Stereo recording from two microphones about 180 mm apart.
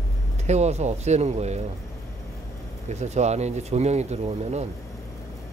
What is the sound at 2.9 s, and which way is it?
Speech, 40° right (ahead or behind).